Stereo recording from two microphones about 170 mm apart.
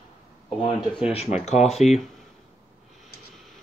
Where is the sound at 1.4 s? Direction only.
40° left (ahead or behind).